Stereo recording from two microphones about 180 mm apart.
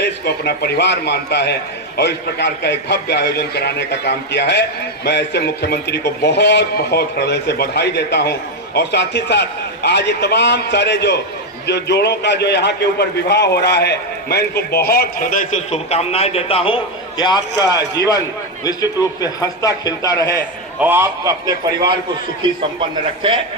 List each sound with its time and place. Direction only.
0.0 s a man's voice: 65° left (ahead or behind); by 15.8 s 50° left (ahead or behind)
15.9 s a man's voice: 35° left (ahead or behind); by 20.4 s 20° left (ahead or behind)
20.7 s a man's voice: 10° right (ahead or behind)